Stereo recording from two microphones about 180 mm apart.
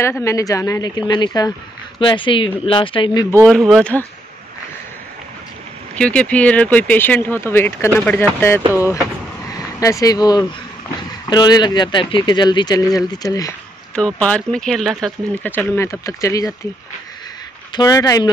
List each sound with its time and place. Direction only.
0.0 s speech: 15° left (ahead or behind)
3.4 s speech: centre (ahead or behind)
5.9 s speech: 5° left (ahead or behind)
13.9 s speech: 5° left (ahead or behind)
17.7 s speech: 20° left (ahead or behind)